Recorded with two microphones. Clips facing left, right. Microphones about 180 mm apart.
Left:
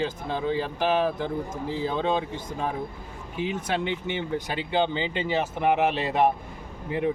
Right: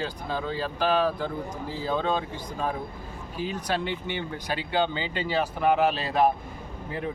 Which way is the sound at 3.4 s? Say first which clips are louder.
Left 2 dB; 20° left (ahead or behind).